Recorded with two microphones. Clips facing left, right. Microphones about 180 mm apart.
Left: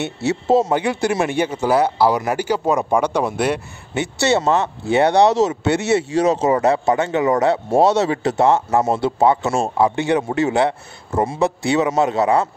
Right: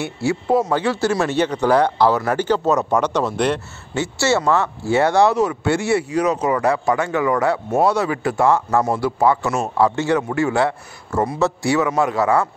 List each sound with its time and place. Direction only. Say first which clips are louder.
0.0 s speech: even; 20° left (ahead or behind)